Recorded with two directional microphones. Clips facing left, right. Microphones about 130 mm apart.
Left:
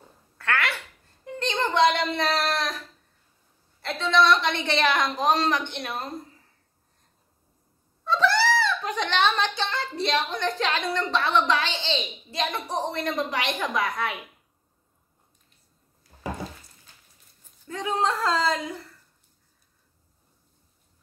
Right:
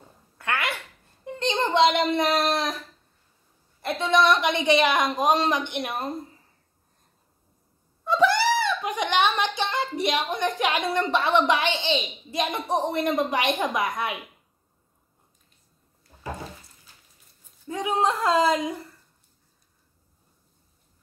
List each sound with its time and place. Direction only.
0.4 s a sound: 15° right (ahead or behind)
3.8 s a woman's voice: 15° right (ahead or behind)
8.0 s a woman's voice: 15° right (ahead or behind)
17.6 s a woman's voice: 15° right (ahead or behind)